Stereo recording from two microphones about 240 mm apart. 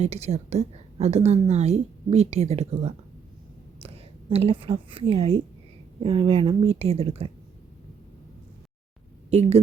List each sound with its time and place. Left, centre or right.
0.0 s a woman's voice: right
9.3 s a woman's voice: right